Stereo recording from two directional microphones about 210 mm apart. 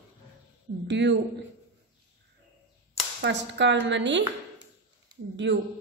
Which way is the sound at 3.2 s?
60° right (ahead or behind).